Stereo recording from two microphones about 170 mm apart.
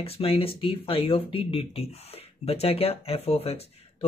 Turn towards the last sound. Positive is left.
turn(degrees=35)  # may be behind; listen again after turning